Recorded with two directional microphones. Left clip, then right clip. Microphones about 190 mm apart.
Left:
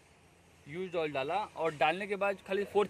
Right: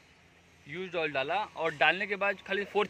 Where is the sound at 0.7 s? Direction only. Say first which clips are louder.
Right 2 dB; 5° left (ahead or behind).